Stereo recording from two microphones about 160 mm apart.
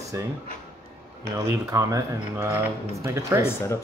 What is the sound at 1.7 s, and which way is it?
Speech, 20° right (ahead or behind).